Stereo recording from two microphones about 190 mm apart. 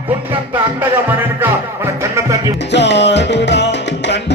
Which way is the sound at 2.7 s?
65° left (ahead or behind).